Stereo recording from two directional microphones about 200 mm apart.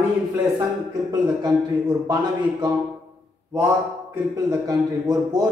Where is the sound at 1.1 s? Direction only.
20° right (ahead or behind).